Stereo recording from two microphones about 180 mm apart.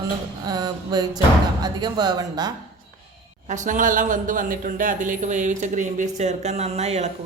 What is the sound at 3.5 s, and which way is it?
A man's voice, 45° right (ahead or behind).